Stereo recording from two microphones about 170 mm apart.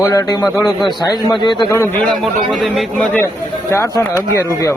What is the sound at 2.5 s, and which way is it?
A man's voice, centre (ahead or behind).